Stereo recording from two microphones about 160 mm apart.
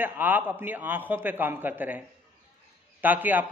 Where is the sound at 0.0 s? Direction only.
10° right (ahead or behind).